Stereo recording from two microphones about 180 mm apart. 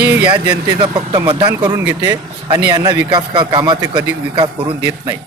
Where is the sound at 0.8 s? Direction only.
30° right (ahead or behind).